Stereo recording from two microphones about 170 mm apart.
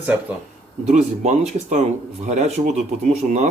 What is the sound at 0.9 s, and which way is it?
Speech, 40° right (ahead or behind).